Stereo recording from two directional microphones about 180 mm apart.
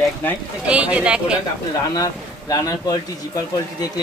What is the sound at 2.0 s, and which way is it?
Speech, 20° left (ahead or behind).